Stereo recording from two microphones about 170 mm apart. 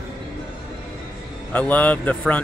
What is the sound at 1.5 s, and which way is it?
Speech, 10° left (ahead or behind).